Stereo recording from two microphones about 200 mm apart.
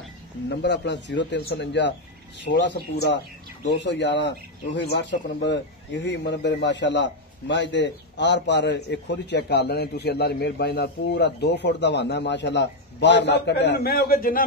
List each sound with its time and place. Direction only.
0.5 s speech: 60° left (ahead or behind)